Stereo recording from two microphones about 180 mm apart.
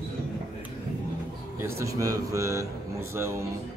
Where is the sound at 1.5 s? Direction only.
15° right (ahead or behind).